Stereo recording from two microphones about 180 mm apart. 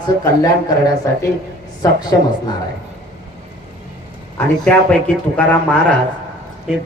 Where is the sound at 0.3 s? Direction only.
20° left (ahead or behind).